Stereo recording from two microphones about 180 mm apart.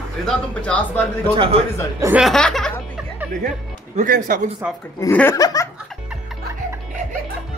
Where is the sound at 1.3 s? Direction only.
30° right (ahead or behind).